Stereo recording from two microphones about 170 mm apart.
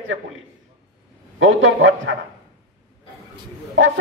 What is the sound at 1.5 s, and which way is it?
Speech, 90° right.